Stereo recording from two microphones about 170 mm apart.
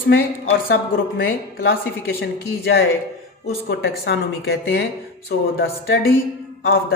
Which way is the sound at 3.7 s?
70° left (ahead or behind).